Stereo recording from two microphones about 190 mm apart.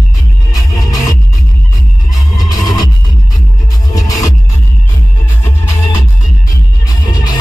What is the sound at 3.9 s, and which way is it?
Music, 20° left (ahead or behind).